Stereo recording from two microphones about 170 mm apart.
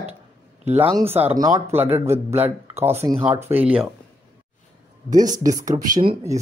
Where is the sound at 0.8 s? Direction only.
35° right (ahead or behind).